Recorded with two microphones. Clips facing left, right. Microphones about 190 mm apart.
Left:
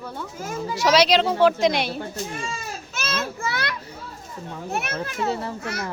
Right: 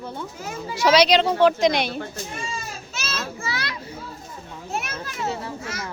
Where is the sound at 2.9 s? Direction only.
55° left (ahead or behind).